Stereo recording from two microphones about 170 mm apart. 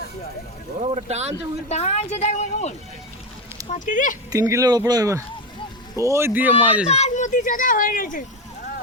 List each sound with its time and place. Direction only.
0.8 s speech: 40° right (ahead or behind)
1.7 s a woman's voice: 40° left (ahead or behind)
4.3 s speech: 20° right (ahead or behind)
6.8 s speech: 40° left (ahead or behind)